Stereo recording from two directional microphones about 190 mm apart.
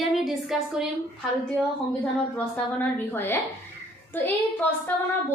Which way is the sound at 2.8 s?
10° left (ahead or behind).